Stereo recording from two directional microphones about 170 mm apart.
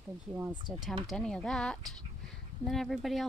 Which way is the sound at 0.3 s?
5° right (ahead or behind).